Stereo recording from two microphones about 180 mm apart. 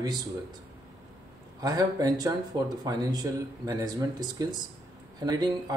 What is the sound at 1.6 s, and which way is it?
Speech, 20° right (ahead or behind).